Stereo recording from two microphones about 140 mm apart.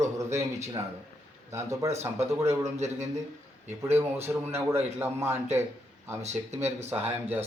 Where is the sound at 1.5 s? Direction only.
20° right (ahead or behind).